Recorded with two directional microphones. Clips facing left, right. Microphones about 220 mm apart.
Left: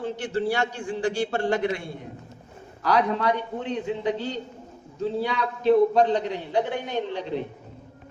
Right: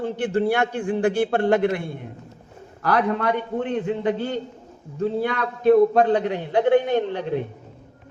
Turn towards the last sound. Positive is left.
turn(degrees=-55)  # may be behind; listen again after turning